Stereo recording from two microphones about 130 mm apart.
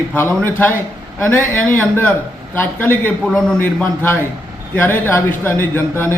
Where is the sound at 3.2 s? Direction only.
Centre (ahead or behind).